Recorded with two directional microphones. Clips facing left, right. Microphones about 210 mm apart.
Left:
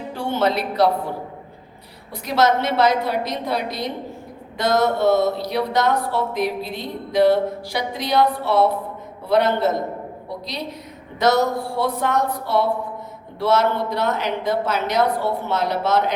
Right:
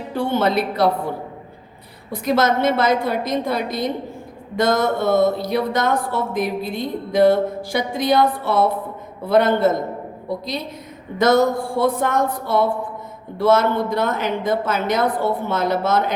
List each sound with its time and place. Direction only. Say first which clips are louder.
0.3 s speech: right 1 dB; 55° right (ahead or behind)
2.1 s speech: right 1 dB; 50° right (ahead or behind)
11.2 s speech: right 3 dB; 50° right (ahead or behind)